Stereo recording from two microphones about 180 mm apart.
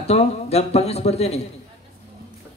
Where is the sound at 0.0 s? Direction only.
35° left (ahead or behind).